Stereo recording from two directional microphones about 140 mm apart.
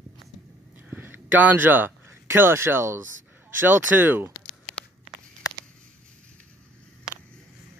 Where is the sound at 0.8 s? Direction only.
15° right (ahead or behind).